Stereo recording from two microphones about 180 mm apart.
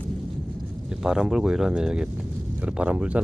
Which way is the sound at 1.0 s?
5° right (ahead or behind).